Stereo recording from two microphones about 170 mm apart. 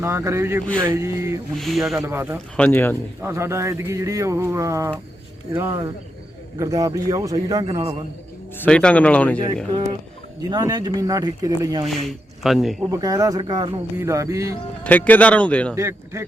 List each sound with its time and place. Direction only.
0.0 s speech: 15° right (ahead or behind)
1.5 s speech: centre (ahead or behind)
2.0 s speech: 15° right (ahead or behind)
2.6 s speech: 10° left (ahead or behind)
3.2 s speech: 15° right (ahead or behind)
8.5 s speech: 5° left (ahead or behind)
9.7 s speech: 30° right (ahead or behind)
11.9 s speech: centre (ahead or behind)
12.8 s speech: 20° right (ahead or behind)
14.8 s speech: 10° left (ahead or behind)
15.7 s speech: 15° right (ahead or behind)